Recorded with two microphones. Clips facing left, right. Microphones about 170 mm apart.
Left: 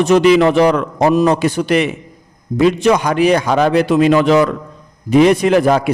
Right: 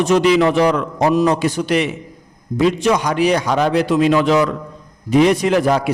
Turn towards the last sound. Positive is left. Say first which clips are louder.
# left 3 dB
turn(degrees=55)  # may be behind; listen again after turning